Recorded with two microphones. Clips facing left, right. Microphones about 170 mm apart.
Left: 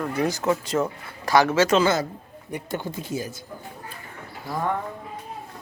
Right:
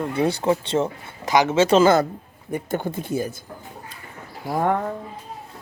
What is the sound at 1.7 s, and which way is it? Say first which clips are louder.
Speech: right 5 dB; 50° right (ahead or behind).